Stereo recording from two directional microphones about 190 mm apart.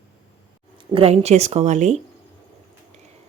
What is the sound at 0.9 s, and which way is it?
Speech, 30° right (ahead or behind).